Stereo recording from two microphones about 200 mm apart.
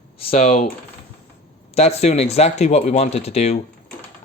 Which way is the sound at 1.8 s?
35° left (ahead or behind).